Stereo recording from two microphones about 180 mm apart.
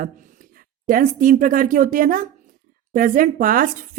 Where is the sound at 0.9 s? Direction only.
50° right (ahead or behind).